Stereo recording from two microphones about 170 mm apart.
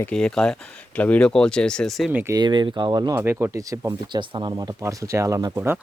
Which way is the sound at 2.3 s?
25° right (ahead or behind).